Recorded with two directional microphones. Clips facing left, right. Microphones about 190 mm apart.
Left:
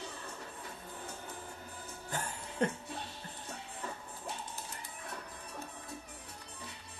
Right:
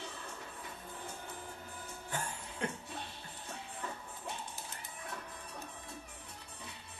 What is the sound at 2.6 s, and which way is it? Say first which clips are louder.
Music: left 6 dB; 40° left (ahead or behind).